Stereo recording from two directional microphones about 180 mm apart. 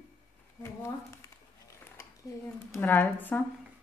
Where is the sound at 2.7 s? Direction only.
10° left (ahead or behind).